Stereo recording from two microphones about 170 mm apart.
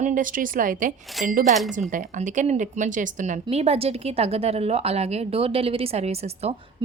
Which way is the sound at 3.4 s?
35° right (ahead or behind).